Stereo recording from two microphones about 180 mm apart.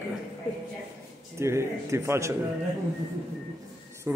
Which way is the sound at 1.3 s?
15° right (ahead or behind).